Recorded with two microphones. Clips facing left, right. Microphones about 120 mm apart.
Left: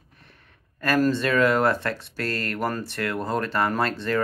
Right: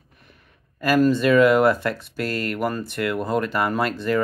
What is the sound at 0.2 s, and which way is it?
Speech, 5° right (ahead or behind).